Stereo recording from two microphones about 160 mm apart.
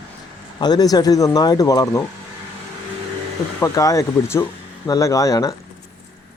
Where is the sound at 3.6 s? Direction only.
20° left (ahead or behind).